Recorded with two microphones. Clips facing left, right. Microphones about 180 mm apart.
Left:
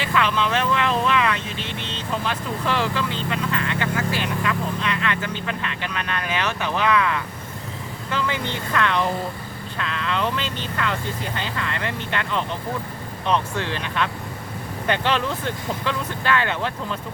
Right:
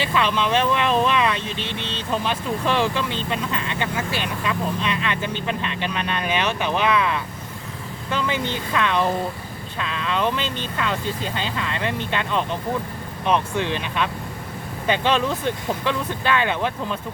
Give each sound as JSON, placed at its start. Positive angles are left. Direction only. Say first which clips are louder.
{"t": 0.0, "sound": "speech", "louder": "right 1 dB", "side_deg": -20}